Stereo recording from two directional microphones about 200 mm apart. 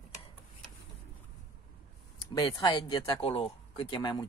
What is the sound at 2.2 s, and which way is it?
Speech, 20° left (ahead or behind).